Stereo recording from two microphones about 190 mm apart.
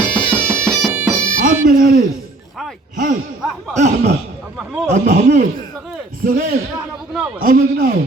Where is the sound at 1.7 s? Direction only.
50° right (ahead or behind).